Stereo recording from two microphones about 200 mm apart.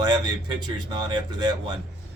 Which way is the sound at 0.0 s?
20° right (ahead or behind).